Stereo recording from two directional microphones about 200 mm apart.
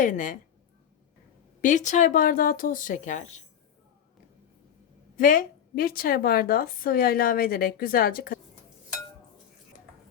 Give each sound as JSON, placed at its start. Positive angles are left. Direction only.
{"t": 0.0, "sound": "speech", "side_deg": 40}
{"t": 1.6, "sound": "speech", "side_deg": 40}
{"t": 5.1, "sound": "a woman's voice", "side_deg": 40}